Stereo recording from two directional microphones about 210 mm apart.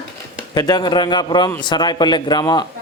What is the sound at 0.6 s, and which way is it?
Speech, 20° left (ahead or behind).